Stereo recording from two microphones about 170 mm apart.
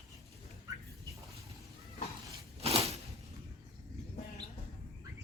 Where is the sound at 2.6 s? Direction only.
35° right (ahead or behind).